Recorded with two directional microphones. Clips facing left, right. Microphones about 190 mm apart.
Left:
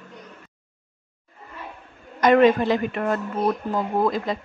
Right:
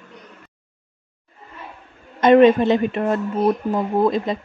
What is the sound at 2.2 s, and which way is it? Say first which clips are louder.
Speech: right 4 dB; 25° right (ahead or behind).